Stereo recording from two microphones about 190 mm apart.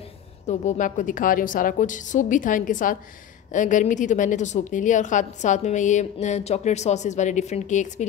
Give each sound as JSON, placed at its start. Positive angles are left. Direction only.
{"t": 0.5, "sound": "a woman's voice", "side_deg": 40}